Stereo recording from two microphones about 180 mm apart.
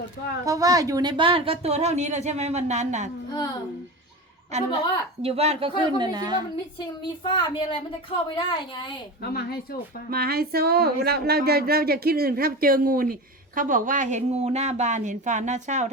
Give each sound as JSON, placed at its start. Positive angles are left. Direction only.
{"t": 0.4, "sound": "speech", "side_deg": -20}
{"t": 4.5, "sound": "a woman's voice", "side_deg": -40}
{"t": 6.7, "sound": "a woman's voice", "side_deg": 25}
{"t": 9.2, "sound": "speech", "side_deg": 55}
{"t": 10.1, "sound": "speech", "side_deg": -55}